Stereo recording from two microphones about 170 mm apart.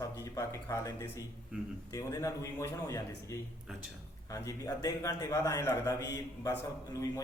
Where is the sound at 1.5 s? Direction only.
5° right (ahead or behind).